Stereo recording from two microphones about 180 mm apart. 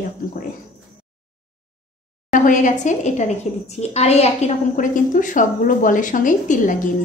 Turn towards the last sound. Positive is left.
turn(degrees=45)  # may be behind; listen again after turning